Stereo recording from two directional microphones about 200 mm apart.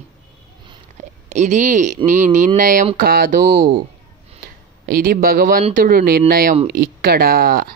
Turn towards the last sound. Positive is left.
turn(degrees=-45)  # may be behind; listen again after turning